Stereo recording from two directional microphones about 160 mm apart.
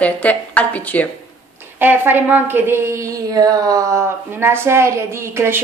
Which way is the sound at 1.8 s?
10° right (ahead or behind).